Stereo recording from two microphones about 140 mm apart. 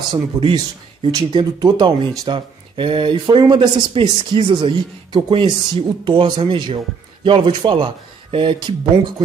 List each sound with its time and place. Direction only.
0.1 s speech: 35° right (ahead or behind)